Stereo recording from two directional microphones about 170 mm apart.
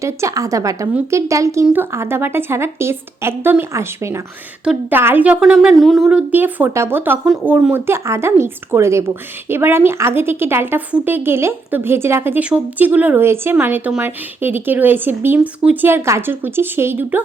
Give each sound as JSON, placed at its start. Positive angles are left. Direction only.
{"t": 0.0, "sound": "a woman's voice", "side_deg": -20}